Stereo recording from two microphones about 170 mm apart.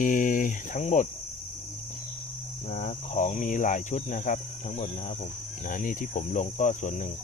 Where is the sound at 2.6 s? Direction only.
45° left (ahead or behind).